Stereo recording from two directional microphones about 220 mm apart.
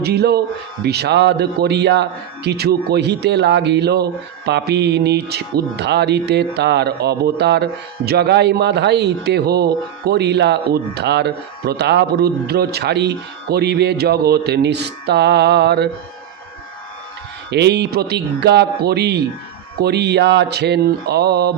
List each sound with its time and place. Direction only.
0.0 s speech: 45° right (ahead or behind)
17.5 s speech: 50° right (ahead or behind)